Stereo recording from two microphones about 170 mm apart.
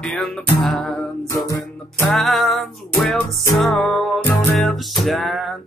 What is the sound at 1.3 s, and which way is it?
Music, 20° left (ahead or behind).